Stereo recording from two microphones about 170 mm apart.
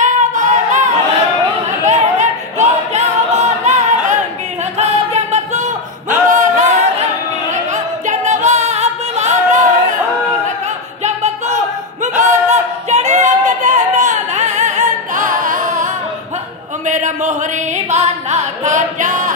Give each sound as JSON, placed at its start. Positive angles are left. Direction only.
{"t": 0.0, "sound": "singing", "side_deg": -45}
{"t": 1.9, "sound": "a sound", "side_deg": -45}
{"t": 4.7, "sound": "music", "side_deg": -40}
{"t": 7.7, "sound": "yodeling", "side_deg": -45}
{"t": 12.0, "sound": "a sound", "side_deg": -45}
{"t": 17.7, "sound": "music", "side_deg": -40}